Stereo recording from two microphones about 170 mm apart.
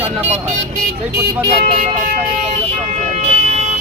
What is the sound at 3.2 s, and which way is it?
Vehicle, 40° right (ahead or behind).